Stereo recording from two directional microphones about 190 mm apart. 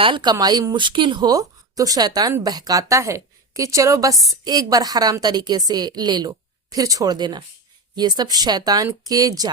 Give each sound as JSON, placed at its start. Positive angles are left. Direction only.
{"t": 0.0, "sound": "speech", "side_deg": -25}